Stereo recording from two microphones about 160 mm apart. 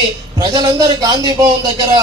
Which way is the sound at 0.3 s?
25° right (ahead or behind).